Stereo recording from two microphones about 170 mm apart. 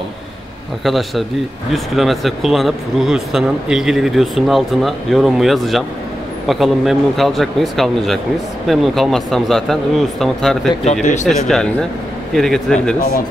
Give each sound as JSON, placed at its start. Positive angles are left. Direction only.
{"t": 0.8, "sound": "speech", "side_deg": 0}
{"t": 10.9, "sound": "speech", "side_deg": 45}
{"t": 11.2, "sound": "speech", "side_deg": 5}